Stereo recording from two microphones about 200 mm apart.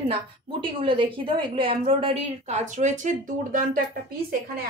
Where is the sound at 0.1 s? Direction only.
25° right (ahead or behind).